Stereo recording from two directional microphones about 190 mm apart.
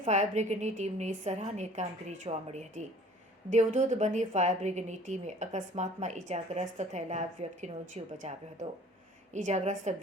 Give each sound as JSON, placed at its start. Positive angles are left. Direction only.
{"t": 0.0, "sound": "a woman's voice", "side_deg": -40}
{"t": 9.3, "sound": "a woman's voice", "side_deg": -40}